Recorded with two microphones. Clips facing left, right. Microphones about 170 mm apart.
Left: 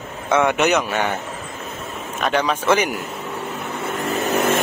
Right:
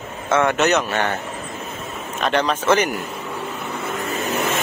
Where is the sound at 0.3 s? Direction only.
10° left (ahead or behind).